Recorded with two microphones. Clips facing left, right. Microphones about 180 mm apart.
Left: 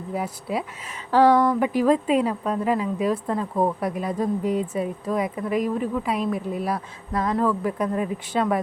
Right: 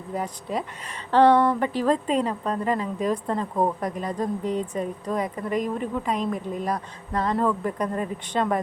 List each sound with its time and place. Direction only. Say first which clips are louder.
0.1 s speech: left 1 dB; 5° left (ahead or behind)